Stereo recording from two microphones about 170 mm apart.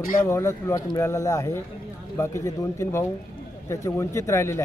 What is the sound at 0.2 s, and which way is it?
A man's voice, 15° left (ahead or behind).